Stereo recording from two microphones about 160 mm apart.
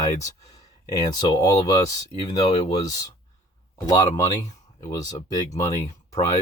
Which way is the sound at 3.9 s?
20° left (ahead or behind).